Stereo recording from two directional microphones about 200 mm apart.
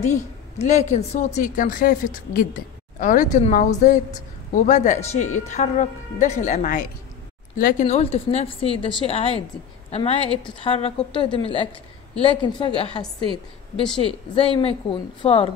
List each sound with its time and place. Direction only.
0.0 s a woman's voice: 35° left (ahead or behind)
14.3 s a woman's voice: 30° left (ahead or behind)